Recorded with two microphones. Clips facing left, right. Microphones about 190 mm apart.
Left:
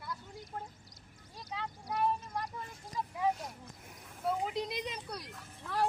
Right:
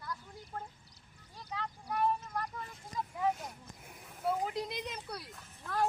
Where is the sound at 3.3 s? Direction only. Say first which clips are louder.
Left 1 dB; centre (ahead or behind).